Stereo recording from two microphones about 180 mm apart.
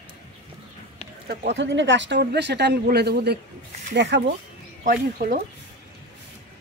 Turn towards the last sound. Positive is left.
turn(degrees=-50)  # may be behind; listen again after turning